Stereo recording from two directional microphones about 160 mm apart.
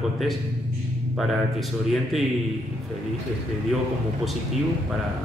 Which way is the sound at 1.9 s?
Centre (ahead or behind).